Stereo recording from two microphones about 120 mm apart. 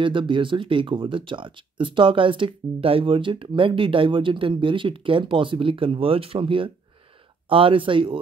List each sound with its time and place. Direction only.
0.0 s speech: 45° right (ahead or behind)